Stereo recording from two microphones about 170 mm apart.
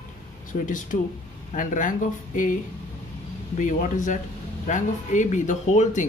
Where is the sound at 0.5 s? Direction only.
50° left (ahead or behind).